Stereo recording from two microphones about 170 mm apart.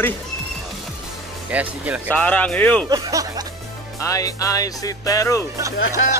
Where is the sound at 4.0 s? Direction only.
20° left (ahead or behind).